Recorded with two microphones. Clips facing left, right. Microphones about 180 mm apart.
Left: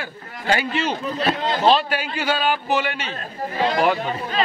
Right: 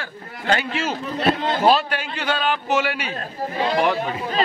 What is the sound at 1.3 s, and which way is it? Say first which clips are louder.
Speech: right 1 dB; 10° right (ahead or behind).